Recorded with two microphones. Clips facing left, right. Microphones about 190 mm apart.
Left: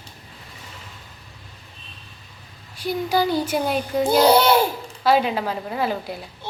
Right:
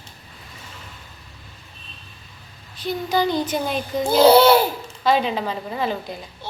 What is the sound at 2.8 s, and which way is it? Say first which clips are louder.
A woman's voice: even; 10° left (ahead or behind).